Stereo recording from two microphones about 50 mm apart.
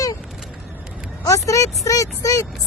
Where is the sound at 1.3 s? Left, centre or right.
Left.